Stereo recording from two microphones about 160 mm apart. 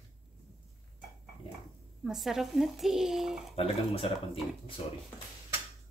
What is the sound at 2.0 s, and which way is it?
Speech, centre (ahead or behind).